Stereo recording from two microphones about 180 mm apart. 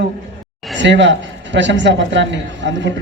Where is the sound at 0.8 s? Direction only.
80° right.